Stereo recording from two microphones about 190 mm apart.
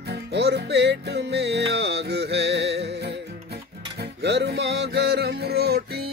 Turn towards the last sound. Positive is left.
turn(degrees=-55)  # may be behind; listen again after turning